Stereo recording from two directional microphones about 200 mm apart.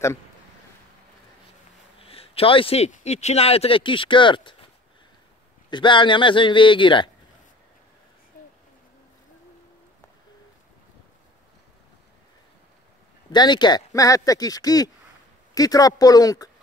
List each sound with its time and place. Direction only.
2.0 s a man's voice: 30° left (ahead or behind)
5.7 s a man's voice: 25° left (ahead or behind)
13.3 s a man's voice: 20° left (ahead or behind)